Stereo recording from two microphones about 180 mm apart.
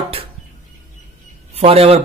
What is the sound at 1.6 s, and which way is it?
Speech, 35° right (ahead or behind).